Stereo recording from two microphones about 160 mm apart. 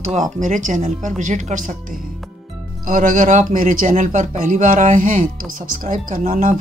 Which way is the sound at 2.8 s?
55° right (ahead or behind).